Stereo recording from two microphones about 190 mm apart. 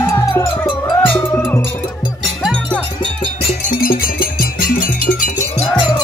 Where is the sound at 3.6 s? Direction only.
45° left (ahead or behind).